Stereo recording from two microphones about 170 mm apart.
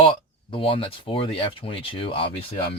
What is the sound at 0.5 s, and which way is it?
Speech, 30° left (ahead or behind).